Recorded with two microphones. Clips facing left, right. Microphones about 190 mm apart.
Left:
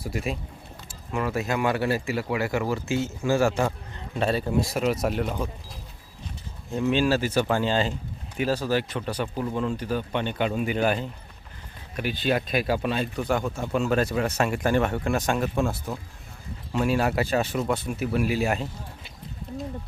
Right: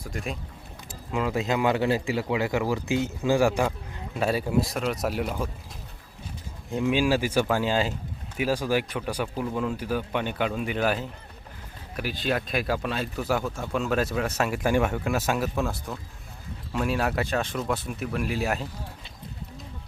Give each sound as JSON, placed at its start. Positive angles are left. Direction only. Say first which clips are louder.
{"t": 0.0, "sound": "speech", "louder": "left 4 dB", "side_deg": 5}
{"t": 0.9, "sound": "speech", "louder": "right 1 dB", "side_deg": -15}
{"t": 6.7, "sound": "speech", "louder": "left 1 dB", "side_deg": -15}